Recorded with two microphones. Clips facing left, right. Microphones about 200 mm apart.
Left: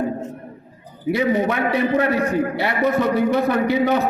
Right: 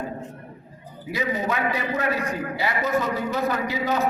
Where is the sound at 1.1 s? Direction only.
65° left (ahead or behind).